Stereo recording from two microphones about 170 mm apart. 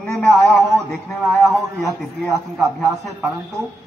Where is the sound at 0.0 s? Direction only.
5° left (ahead or behind).